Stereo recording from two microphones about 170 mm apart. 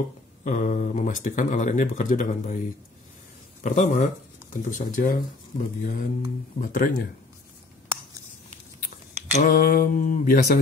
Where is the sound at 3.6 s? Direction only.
45° left (ahead or behind).